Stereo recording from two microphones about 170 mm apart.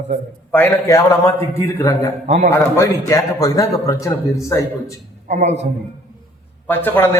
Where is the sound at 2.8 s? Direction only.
20° left (ahead or behind).